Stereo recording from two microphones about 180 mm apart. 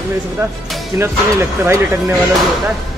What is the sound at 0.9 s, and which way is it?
Speech, 15° right (ahead or behind).